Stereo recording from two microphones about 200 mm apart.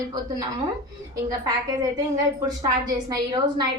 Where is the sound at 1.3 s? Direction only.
20° right (ahead or behind).